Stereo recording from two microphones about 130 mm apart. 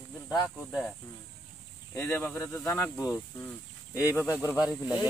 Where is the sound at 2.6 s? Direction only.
20° left (ahead or behind).